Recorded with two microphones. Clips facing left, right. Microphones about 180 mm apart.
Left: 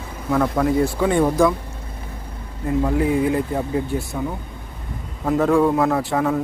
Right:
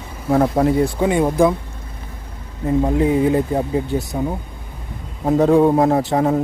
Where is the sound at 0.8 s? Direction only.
15° right (ahead or behind).